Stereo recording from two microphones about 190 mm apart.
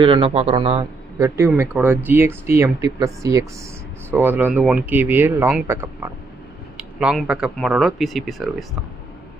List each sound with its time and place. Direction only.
0.0 s speech: 25° right (ahead or behind)
1.2 s speech: 15° right (ahead or behind)